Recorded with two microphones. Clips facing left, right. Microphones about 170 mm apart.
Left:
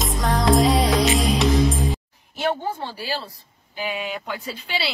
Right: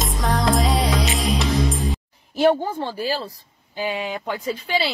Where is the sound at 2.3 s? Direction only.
40° right (ahead or behind).